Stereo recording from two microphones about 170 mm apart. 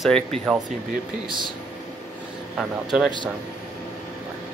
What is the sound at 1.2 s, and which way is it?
Speech, 25° right (ahead or behind).